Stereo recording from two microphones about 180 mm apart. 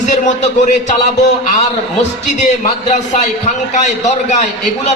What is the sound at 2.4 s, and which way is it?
A man's voice, 40° left (ahead or behind).